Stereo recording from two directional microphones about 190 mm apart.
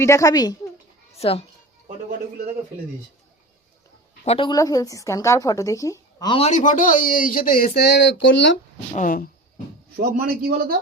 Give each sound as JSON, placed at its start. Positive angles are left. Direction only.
{"t": 0.0, "sound": "a woman's voice", "side_deg": 15}
{"t": 1.1, "sound": "a woman's voice", "side_deg": 30}
{"t": 4.3, "sound": "a woman's voice", "side_deg": 25}
{"t": 6.5, "sound": "speech", "side_deg": 40}
{"t": 9.0, "sound": "speech", "side_deg": 50}
{"t": 10.0, "sound": "a man's voice", "side_deg": -50}